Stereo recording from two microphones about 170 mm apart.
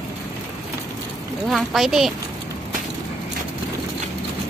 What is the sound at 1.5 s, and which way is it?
Speech, centre (ahead or behind).